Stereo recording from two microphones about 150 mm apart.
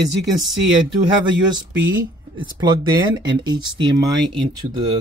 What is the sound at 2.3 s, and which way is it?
Speech, 30° right (ahead or behind).